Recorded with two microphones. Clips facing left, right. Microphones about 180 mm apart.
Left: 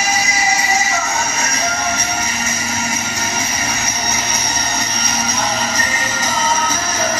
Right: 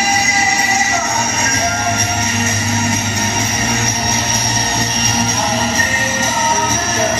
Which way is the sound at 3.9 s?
30° right (ahead or behind).